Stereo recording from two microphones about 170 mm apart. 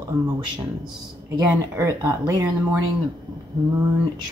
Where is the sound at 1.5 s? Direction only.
15° right (ahead or behind).